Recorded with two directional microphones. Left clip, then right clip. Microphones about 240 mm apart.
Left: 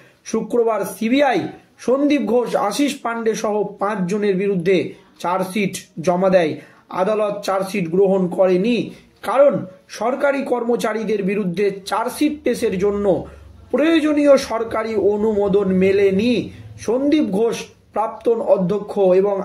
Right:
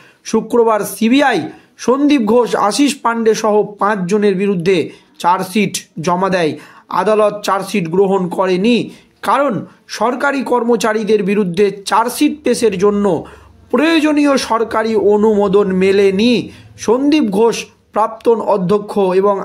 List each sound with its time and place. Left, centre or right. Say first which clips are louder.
0.3 s speech: right 6 dB; right